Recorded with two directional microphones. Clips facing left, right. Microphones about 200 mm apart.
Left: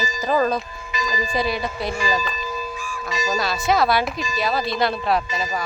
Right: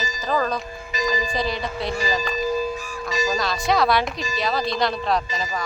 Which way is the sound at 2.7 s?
40° right (ahead or behind).